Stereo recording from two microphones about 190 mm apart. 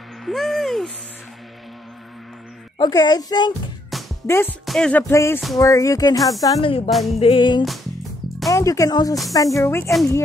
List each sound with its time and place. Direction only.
0.2 s owl: centre (ahead or behind)
2.8 s a child's voice: 20° left (ahead or behind)
3.9 s music: centre (ahead or behind)
4.3 s speech: 10° left (ahead or behind)
4.6 s music: 5° left (ahead or behind)
5.1 s a child's voice: 15° left (ahead or behind)
6.9 s music: centre (ahead or behind)
7.2 s a child's voice: 30° left (ahead or behind)